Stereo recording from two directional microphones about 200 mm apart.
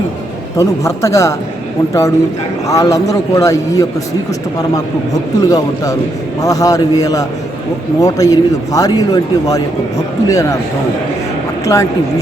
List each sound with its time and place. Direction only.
0.5 s a man's voice: 15° left (ahead or behind)
5.4 s a man's voice: 20° left (ahead or behind)
11.6 s speech: 15° left (ahead or behind)